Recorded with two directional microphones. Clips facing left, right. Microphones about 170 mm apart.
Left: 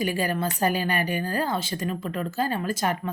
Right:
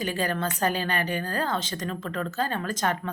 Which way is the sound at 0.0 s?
10° left (ahead or behind).